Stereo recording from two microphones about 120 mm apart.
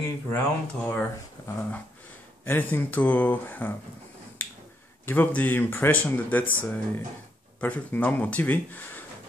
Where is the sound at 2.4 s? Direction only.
15° left (ahead or behind).